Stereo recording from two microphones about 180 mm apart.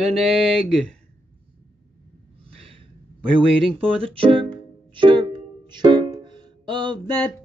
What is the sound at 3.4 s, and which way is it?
Speech, 30° right (ahead or behind).